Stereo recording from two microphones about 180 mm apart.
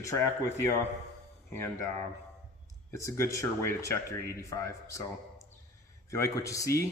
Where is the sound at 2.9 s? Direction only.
15° left (ahead or behind).